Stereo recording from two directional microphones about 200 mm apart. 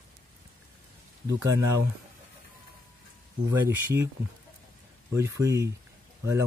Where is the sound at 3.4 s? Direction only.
15° right (ahead or behind).